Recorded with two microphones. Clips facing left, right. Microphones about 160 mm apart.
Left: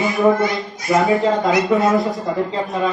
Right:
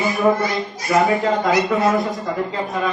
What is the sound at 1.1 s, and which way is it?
Speech, 20° left (ahead or behind).